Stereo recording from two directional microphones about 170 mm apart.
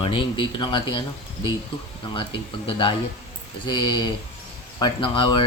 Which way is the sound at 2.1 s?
30° left (ahead or behind).